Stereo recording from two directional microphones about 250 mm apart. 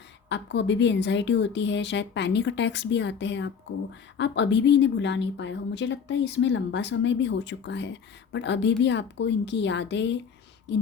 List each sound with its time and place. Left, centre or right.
0.3 s speech: left